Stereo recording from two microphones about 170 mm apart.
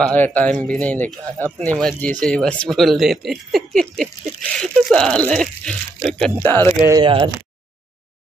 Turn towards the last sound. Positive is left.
turn(degrees=-20)  # may be behind; listen again after turning